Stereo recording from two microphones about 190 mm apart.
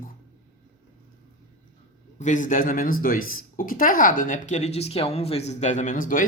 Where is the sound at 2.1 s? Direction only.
40° left (ahead or behind).